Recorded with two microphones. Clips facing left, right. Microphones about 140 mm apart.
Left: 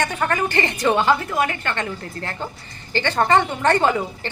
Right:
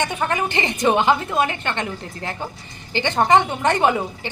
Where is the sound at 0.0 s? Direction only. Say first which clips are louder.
Even; 20° right (ahead or behind).